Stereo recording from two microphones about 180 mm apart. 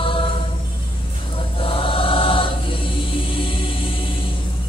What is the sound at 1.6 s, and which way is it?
Choir, 30° left (ahead or behind).